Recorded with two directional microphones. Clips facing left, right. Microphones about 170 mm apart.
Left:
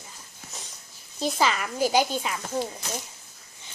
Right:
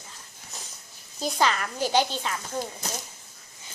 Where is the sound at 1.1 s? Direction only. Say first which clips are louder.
Even; centre (ahead or behind).